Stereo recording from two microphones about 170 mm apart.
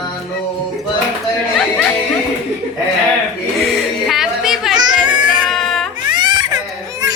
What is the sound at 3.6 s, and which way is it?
Music, centre (ahead or behind).